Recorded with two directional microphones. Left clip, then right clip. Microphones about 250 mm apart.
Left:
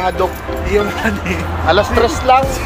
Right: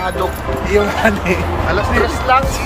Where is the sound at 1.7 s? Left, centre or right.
Left.